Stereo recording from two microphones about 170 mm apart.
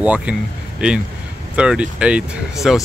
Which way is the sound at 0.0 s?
5° right (ahead or behind).